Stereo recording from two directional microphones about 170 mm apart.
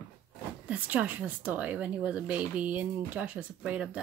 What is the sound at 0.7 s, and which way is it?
Speech, 10° right (ahead or behind).